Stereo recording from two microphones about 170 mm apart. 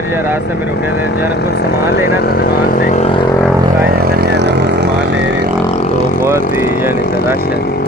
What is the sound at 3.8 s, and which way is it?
Vehicle, 60° right (ahead or behind).